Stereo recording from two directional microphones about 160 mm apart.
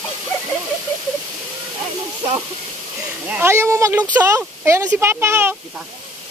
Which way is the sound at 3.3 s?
15° right (ahead or behind).